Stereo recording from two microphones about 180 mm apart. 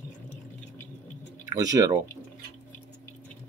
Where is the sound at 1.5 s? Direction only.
20° right (ahead or behind).